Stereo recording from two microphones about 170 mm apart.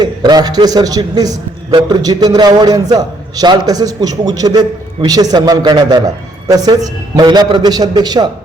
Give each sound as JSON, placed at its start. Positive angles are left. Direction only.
{"t": 0.0, "sound": "a man's voice", "side_deg": -25}